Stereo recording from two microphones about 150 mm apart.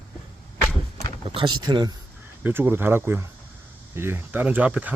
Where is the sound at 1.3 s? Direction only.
30° right (ahead or behind).